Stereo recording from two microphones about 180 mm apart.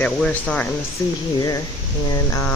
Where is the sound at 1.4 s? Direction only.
20° left (ahead or behind).